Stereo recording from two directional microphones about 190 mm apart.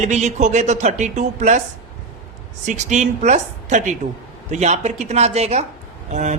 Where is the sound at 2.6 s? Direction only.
40° right (ahead or behind).